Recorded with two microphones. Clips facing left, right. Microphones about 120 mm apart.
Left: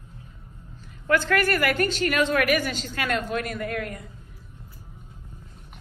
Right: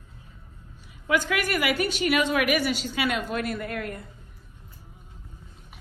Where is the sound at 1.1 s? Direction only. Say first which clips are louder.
Left 3 dB; 10° right (ahead or behind).